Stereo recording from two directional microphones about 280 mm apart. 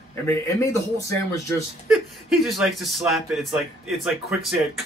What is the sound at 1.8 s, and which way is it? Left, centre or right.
Speech, centre.